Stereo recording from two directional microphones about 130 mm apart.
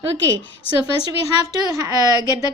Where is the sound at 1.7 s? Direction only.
25° right (ahead or behind).